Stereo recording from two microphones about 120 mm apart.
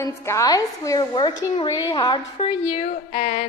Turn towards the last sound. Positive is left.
turn(degrees=80)